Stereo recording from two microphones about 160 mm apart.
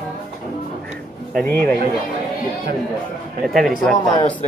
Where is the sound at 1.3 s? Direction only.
10° left (ahead or behind).